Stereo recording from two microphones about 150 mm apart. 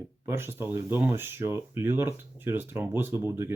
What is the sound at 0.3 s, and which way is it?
Speech, 15° right (ahead or behind).